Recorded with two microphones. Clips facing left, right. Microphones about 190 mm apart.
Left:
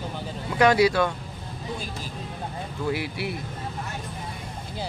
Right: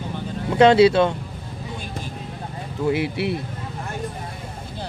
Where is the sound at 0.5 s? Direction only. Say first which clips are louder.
Right 6 dB; 25° right (ahead or behind).